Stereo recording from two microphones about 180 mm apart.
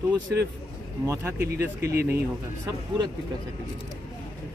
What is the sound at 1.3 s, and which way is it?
Speech, 60° right (ahead or behind).